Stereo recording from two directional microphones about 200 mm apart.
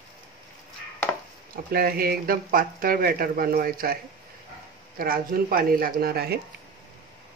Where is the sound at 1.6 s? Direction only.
45° right (ahead or behind).